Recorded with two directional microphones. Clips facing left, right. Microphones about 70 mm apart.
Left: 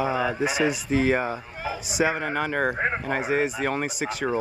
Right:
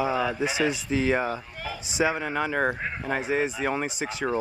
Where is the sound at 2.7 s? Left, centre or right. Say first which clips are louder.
Left 7 dB; left.